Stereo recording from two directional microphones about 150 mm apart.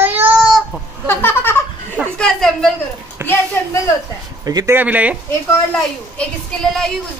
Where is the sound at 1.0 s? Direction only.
15° left (ahead or behind).